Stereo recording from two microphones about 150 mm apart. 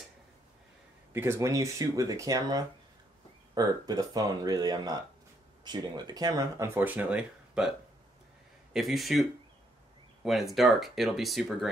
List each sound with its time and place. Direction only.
1.1 s speech: 15° right (ahead or behind)
8.7 s speech: centre (ahead or behind)
10.2 s speech: centre (ahead or behind)